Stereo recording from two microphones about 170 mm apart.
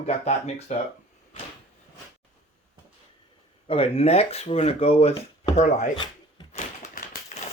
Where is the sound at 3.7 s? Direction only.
35° left (ahead or behind).